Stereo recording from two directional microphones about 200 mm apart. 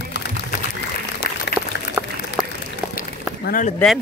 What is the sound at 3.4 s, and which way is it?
Speech, 45° left (ahead or behind).